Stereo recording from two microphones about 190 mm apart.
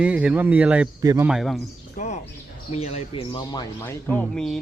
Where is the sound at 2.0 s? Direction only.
40° left (ahead or behind).